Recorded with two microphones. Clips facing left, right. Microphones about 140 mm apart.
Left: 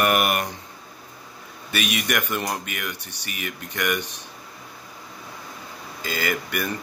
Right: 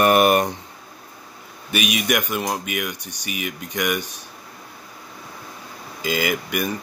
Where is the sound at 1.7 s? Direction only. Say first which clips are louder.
Right 4 dB; 15° right (ahead or behind).